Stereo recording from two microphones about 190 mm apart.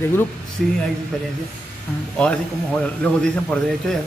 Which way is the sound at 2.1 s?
5° left (ahead or behind).